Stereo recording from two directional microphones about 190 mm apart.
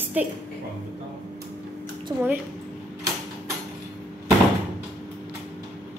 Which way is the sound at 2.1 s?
15° right (ahead or behind).